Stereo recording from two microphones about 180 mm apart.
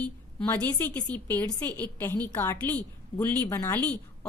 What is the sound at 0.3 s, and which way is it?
A woman's voice, 10° left (ahead or behind).